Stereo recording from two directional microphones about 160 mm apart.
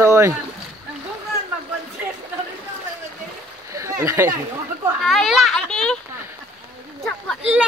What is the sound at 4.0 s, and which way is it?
Speech, 20° right (ahead or behind).